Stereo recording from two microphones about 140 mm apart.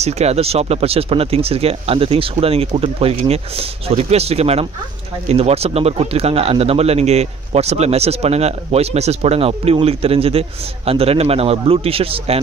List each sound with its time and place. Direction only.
0.0 s speech: 50° right (ahead or behind)